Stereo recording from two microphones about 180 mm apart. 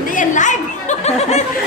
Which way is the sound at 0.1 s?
45° left (ahead or behind).